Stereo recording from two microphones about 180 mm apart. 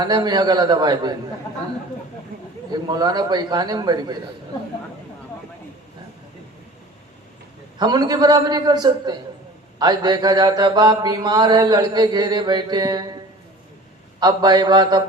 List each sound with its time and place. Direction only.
0.0 s mantra: 25° right (ahead or behind)
2.9 s mantra: 25° right (ahead or behind)
7.8 s mantra: 20° right (ahead or behind)
14.2 s mantra: 20° right (ahead or behind)